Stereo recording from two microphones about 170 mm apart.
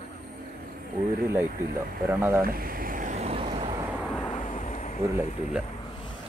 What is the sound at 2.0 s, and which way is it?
Speech, 15° right (ahead or behind).